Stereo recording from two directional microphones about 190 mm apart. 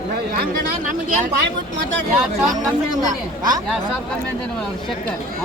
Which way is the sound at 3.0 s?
20° right (ahead or behind).